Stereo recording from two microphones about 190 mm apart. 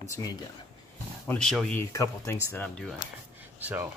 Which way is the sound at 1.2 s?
5° left (ahead or behind).